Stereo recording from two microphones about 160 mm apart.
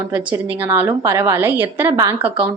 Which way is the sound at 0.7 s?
15° right (ahead or behind).